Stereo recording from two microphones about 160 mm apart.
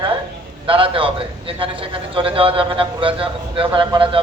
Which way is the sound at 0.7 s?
35° right (ahead or behind).